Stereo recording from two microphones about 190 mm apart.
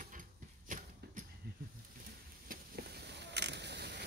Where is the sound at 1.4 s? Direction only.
60° right (ahead or behind).